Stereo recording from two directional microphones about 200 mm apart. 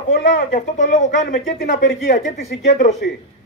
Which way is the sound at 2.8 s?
35° left (ahead or behind).